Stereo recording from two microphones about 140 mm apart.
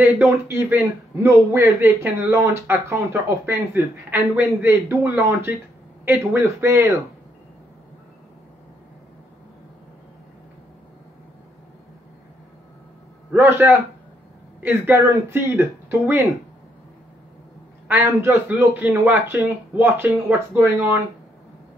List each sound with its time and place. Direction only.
0.0 s a man's voice: 15° right (ahead or behind)
13.3 s a man's voice: 15° right (ahead or behind)
17.8 s a man's voice: 15° right (ahead or behind)